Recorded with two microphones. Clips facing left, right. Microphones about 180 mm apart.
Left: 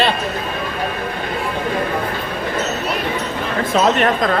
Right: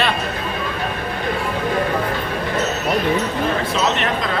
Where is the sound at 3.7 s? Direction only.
45° left (ahead or behind).